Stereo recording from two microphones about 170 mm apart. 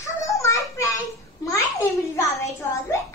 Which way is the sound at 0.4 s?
20° left (ahead or behind).